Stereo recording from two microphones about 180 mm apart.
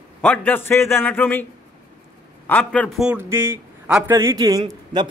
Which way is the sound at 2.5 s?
10° left (ahead or behind).